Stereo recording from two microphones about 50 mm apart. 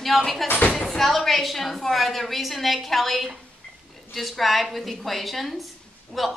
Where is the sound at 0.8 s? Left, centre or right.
Centre.